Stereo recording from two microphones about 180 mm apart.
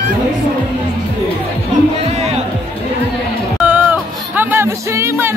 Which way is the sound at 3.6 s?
10° right (ahead or behind).